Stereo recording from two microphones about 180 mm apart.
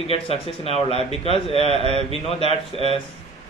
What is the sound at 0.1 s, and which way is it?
A man's voice, 35° left (ahead or behind).